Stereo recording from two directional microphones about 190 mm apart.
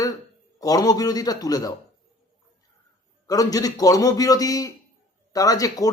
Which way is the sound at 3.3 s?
20° left (ahead or behind).